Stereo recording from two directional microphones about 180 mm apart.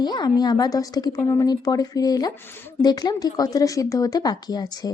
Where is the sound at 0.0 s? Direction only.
25° left (ahead or behind).